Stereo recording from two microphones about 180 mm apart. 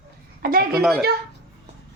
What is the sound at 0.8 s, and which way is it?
Speech, centre (ahead or behind).